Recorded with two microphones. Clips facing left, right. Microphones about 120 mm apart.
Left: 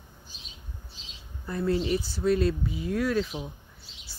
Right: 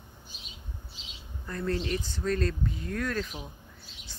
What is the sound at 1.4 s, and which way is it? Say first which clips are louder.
Speech: left 4 dB; 10° left (ahead or behind).